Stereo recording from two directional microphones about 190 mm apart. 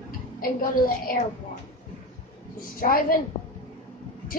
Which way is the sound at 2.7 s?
50° left (ahead or behind).